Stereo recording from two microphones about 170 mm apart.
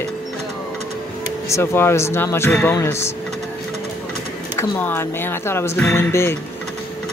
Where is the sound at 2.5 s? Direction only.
5° left (ahead or behind).